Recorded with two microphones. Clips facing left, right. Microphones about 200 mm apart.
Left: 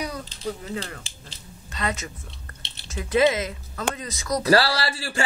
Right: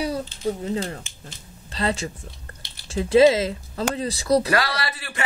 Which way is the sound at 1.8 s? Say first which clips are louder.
Right 4 dB; 30° right (ahead or behind).